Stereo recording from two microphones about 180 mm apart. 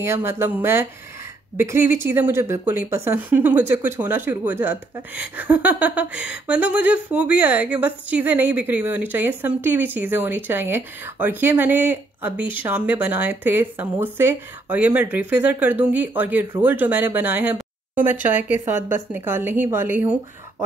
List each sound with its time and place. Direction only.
0.0 s speech: 15° right (ahead or behind)
18.8 s a woman's voice: 45° left (ahead or behind)
19.1 s speech: 10° right (ahead or behind)